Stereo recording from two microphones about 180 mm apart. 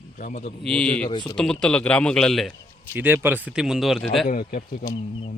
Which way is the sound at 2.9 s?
10° right (ahead or behind).